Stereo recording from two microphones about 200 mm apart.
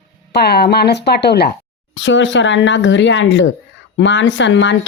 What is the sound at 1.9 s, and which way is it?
Speech, 65° left (ahead or behind).